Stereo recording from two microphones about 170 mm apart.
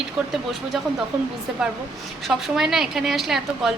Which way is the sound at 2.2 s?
5° right (ahead or behind).